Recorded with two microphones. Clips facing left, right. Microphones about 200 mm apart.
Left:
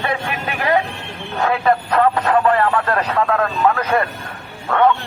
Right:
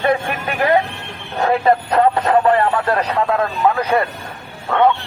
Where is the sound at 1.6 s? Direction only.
20° right (ahead or behind).